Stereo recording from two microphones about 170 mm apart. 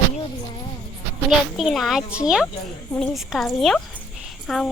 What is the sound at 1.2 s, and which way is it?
Speech, centre (ahead or behind).